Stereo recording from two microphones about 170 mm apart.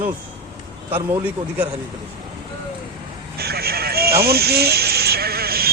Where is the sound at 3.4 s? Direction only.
65° right (ahead or behind).